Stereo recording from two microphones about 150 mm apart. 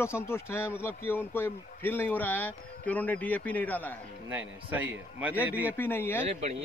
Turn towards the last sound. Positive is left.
turn(degrees=15)  # may be behind; listen again after turning